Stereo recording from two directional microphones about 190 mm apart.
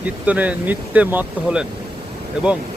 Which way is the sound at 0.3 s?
10° right (ahead or behind).